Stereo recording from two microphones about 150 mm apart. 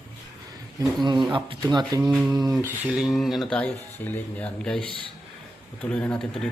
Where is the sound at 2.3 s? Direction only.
25° right (ahead or behind).